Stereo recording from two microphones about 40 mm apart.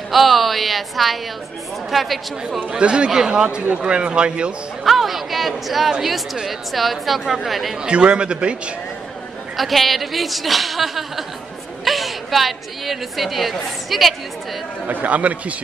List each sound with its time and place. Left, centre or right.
0.1 s a woman's voice: centre
2.8 s a man's voice: right
3.7 s a man's voice: right
4.8 s a woman's voice: centre
7.8 s a man's voice: right
9.6 s a woman's voice: centre
14.9 s speech: right